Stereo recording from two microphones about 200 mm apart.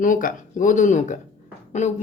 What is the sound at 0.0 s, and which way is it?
Speech, 40° left (ahead or behind).